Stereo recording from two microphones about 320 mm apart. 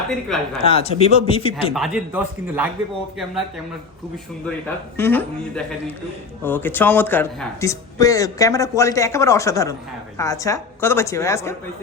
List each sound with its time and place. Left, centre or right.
0.3 s a man's voice: centre
0.6 s speech: centre
1.7 s a man's voice: centre
4.9 s speech: centre